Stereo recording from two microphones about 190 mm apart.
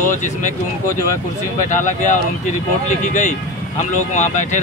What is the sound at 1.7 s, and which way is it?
Speech, 40° left (ahead or behind).